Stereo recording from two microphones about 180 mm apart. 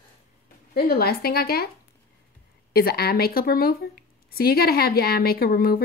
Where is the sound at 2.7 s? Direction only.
60° left (ahead or behind).